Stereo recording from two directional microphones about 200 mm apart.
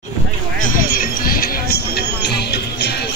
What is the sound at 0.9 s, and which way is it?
Music, 45° left (ahead or behind).